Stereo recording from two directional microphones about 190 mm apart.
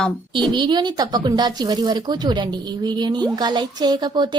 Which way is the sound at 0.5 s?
25° right (ahead or behind).